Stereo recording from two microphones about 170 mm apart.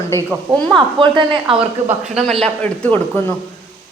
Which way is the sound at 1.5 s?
5° right (ahead or behind).